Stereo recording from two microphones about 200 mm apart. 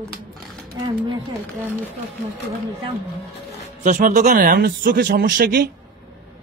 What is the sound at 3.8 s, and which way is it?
Speech, 40° right (ahead or behind).